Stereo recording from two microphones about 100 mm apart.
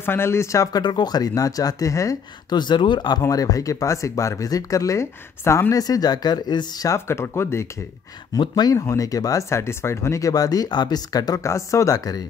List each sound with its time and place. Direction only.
0.0 s speech: 25° left (ahead or behind)
0.8 s speech: 45° left (ahead or behind)
2.5 s speech: 50° left (ahead or behind)
3.2 s speech: 35° left (ahead or behind)
7.1 s speech: 25° left (ahead or behind)
8.4 s speech: 45° left (ahead or behind)
8.7 s speech: 30° left (ahead or behind)